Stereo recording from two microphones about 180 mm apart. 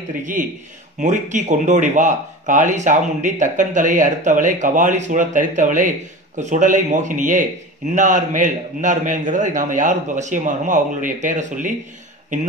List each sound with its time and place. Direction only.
0.2 s speech: 45° right (ahead or behind)